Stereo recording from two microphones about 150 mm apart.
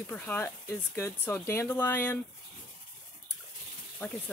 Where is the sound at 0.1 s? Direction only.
15° left (ahead or behind).